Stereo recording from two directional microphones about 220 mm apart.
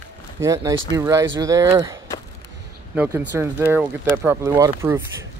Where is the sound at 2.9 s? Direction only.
5° right (ahead or behind).